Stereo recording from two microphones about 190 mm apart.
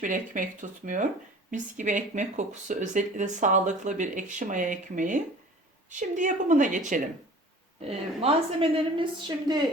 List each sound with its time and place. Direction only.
0.0 s speech: 45° right (ahead or behind); by 9.6 s 25° right (ahead or behind)